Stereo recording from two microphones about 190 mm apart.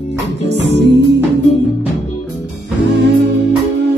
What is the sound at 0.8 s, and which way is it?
Music, 65° right (ahead or behind).